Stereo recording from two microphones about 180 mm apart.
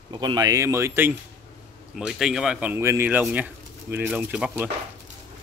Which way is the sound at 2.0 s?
5° right (ahead or behind).